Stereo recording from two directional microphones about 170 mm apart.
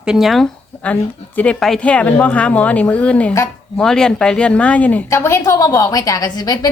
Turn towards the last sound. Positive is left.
turn(degrees=25)  # may be behind; listen again after turning